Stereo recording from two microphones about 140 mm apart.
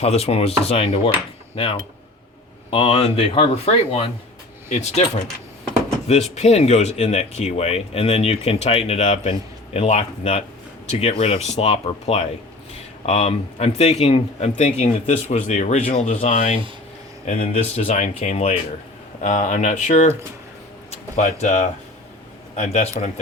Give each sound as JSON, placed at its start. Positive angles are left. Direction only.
{"t": 0.0, "sound": "speech", "side_deg": 45}
{"t": 4.7, "sound": "speech", "side_deg": 50}
{"t": 6.1, "sound": "speech", "side_deg": 50}
{"t": 15.9, "sound": "speech", "side_deg": 50}
{"t": 21.2, "sound": "speech", "side_deg": 60}